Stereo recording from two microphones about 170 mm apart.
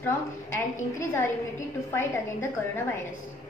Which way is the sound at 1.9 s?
15° left (ahead or behind).